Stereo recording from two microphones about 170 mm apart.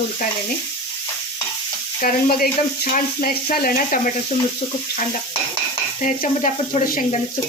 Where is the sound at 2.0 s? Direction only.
55° left (ahead or behind).